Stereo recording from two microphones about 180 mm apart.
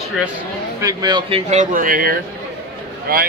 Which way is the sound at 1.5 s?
45° right (ahead or behind).